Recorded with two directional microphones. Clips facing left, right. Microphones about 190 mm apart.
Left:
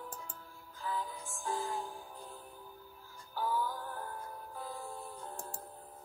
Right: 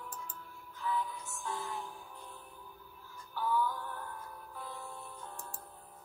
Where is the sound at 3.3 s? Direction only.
40° left (ahead or behind).